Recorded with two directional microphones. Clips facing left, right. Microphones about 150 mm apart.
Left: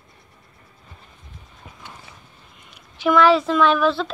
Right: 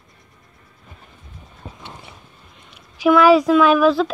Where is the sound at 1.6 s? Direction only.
25° right (ahead or behind).